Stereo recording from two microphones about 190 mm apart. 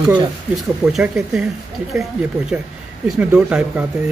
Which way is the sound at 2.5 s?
10° right (ahead or behind).